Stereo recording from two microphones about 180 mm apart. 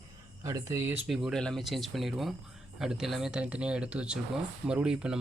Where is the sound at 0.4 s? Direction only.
15° right (ahead or behind).